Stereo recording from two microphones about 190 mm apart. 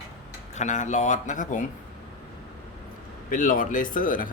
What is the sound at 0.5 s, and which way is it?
A man's voice, 40° left (ahead or behind).